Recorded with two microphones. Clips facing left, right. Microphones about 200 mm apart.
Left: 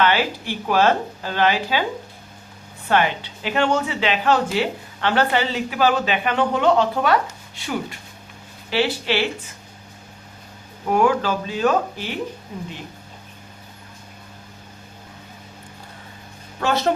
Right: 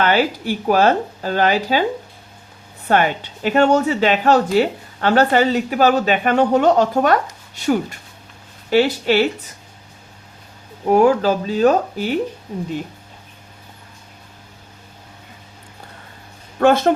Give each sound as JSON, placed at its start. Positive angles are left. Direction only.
{"t": 0.0, "sound": "speech", "side_deg": -40}
{"t": 2.9, "sound": "speech", "side_deg": -45}
{"t": 10.8, "sound": "speech", "side_deg": -40}
{"t": 16.6, "sound": "speech", "side_deg": -50}